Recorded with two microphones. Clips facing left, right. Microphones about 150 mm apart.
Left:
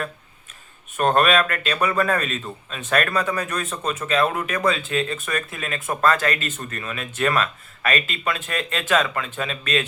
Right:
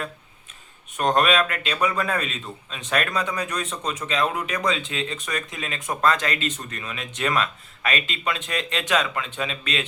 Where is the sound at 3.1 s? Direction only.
55° left (ahead or behind).